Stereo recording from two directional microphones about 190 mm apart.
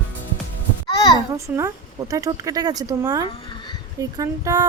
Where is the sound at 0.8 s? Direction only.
20° left (ahead or behind).